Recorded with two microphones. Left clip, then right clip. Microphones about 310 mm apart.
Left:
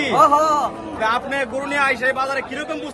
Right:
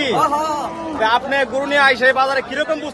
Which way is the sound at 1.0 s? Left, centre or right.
Centre.